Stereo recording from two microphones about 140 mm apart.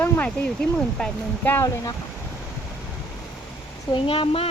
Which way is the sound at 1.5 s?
20° left (ahead or behind).